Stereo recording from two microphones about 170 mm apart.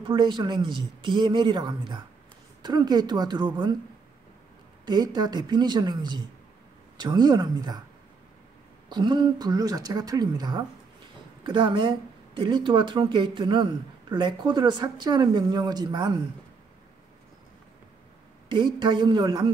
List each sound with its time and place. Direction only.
0.0 s speech: 25° right (ahead or behind)
4.8 s speech: 25° right (ahead or behind)
8.8 s speech: 25° right (ahead or behind)
18.5 s speech: 30° right (ahead or behind)